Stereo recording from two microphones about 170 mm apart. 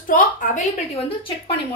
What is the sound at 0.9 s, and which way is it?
Speech, 30° left (ahead or behind).